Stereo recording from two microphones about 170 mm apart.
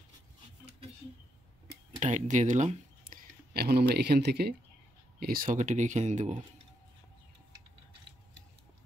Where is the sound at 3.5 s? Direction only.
65° right (ahead or behind).